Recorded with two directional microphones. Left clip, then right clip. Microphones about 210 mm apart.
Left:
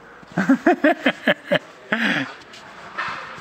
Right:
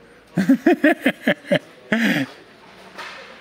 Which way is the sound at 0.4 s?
55° right (ahead or behind).